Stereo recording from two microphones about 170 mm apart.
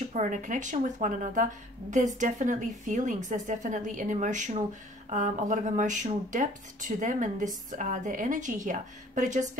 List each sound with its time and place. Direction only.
0.1 s speech: 50° right (ahead or behind)